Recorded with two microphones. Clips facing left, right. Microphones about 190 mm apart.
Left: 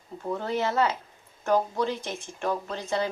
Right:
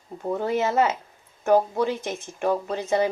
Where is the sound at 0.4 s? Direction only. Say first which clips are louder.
Right 4 dB; 15° right (ahead or behind).